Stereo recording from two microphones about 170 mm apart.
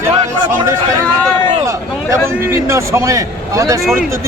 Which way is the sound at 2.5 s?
15° right (ahead or behind).